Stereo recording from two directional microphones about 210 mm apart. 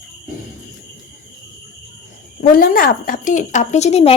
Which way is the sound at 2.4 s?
45° left (ahead or behind).